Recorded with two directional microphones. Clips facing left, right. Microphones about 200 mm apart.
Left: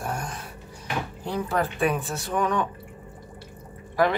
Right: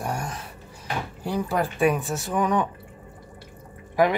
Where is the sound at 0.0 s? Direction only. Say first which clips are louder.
Right 2 dB; 10° right (ahead or behind).